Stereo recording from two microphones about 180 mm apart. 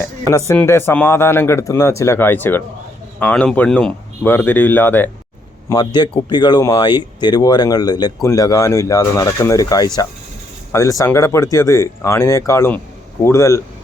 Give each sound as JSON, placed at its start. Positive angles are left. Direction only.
{"t": 0.3, "sound": "speech", "side_deg": 20}
{"t": 5.6, "sound": "speech", "side_deg": 20}